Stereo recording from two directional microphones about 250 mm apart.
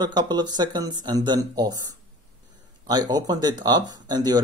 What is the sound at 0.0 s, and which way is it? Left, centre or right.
Speech, centre.